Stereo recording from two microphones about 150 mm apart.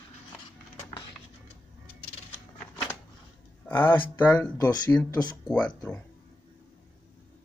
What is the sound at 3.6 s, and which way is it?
Speech, 15° left (ahead or behind).